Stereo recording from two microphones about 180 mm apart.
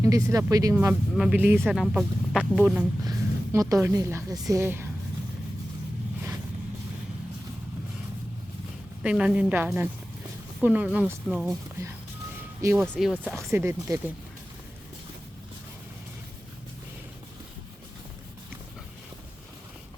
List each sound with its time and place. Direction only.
0.0 s speech: 15° right (ahead or behind)
1.6 s speech: centre (ahead or behind)
3.0 s a woman's voice: 20° right (ahead or behind)
9.0 s speech: 5° right (ahead or behind)
12.6 s speech: 10° right (ahead or behind)
13.0 s speech: centre (ahead or behind)
13.3 s speech: 15° right (ahead or behind)